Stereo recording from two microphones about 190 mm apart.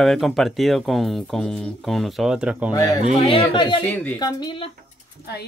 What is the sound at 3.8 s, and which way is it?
Speech, 10° left (ahead or behind).